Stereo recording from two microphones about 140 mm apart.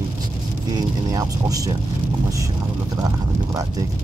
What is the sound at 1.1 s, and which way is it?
Speech, 25° right (ahead or behind).